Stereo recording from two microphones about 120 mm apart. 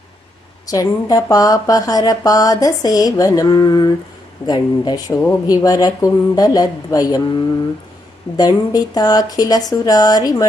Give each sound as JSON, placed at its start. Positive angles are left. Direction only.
{"t": 0.7, "sound": "a woman's voice", "side_deg": 30}
{"t": 8.4, "sound": "a woman's voice", "side_deg": 30}